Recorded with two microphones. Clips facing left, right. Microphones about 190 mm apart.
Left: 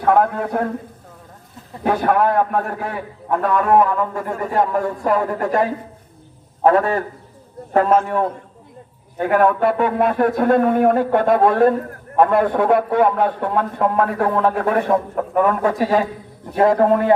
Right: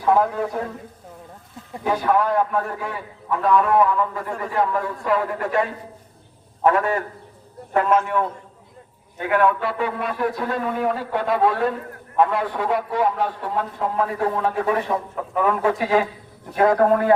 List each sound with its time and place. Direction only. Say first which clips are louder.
0.0 s a man's voice: left 3 dB; 60° left (ahead or behind)
1.8 s a man's voice: left 3 dB; 60° left (ahead or behind); by 16.0 s 35° left (ahead or behind)
16.6 s a man's voice: left 2 dB; 25° left (ahead or behind)